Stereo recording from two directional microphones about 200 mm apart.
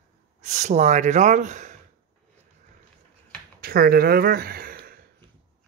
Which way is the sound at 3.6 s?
50° right (ahead or behind).